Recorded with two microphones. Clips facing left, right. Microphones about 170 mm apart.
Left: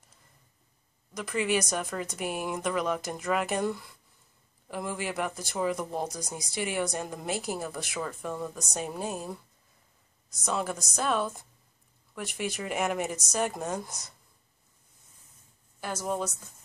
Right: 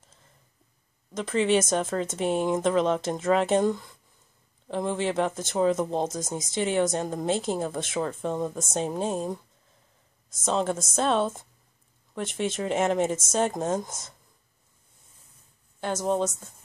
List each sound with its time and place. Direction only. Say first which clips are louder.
1.1 s speech: right 5 dB; 25° right (ahead or behind)
10.4 s speech: right 5 dB; 25° right (ahead or behind)
15.8 s speech: right 6 dB; 25° right (ahead or behind)